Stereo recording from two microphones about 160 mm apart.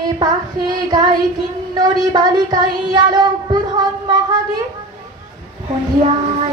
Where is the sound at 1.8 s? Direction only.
25° right (ahead or behind).